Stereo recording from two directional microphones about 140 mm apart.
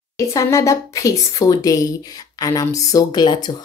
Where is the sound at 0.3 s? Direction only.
20° left (ahead or behind).